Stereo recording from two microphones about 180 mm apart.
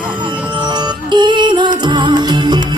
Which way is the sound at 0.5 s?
25° right (ahead or behind).